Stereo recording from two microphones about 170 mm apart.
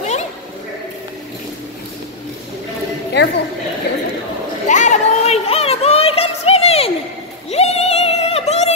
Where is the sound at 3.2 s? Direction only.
90° left.